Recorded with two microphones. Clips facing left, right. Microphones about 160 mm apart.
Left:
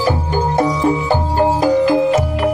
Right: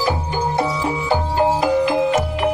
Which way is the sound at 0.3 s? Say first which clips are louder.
Left 4 dB; 45° left (ahead or behind).